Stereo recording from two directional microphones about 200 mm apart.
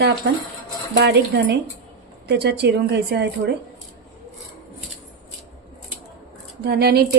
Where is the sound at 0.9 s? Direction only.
55° right (ahead or behind).